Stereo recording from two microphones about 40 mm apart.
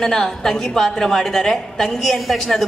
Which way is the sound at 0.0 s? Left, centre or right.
Centre.